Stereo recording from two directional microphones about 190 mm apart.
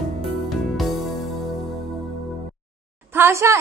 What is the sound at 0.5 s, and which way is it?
Music, centre (ahead or behind).